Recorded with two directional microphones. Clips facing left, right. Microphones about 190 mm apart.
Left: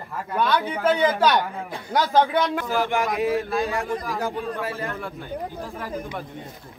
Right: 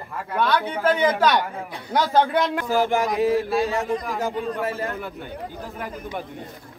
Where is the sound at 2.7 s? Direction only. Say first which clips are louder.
Right 2 dB; 35° right (ahead or behind).